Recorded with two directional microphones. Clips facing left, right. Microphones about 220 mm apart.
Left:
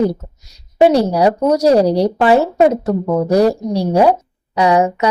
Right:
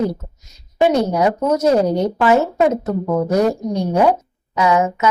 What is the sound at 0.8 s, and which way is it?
Speech, 35° left (ahead or behind).